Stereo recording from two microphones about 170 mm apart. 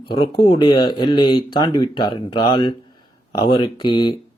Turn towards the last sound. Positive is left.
turn(degrees=25)  # may be behind; listen again after turning